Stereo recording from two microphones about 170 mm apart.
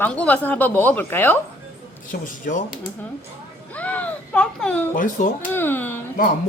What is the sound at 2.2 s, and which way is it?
Speech, 50° left (ahead or behind).